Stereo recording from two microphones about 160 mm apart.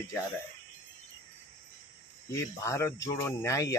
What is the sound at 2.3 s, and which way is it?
Speech, 20° left (ahead or behind).